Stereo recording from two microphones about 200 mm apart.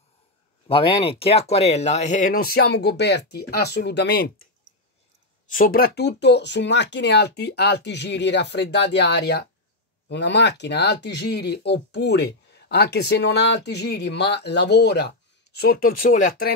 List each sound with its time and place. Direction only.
0.7 s speech: 25° left (ahead or behind); by 4.5 s 55° left (ahead or behind)
5.5 s speech: 45° left (ahead or behind)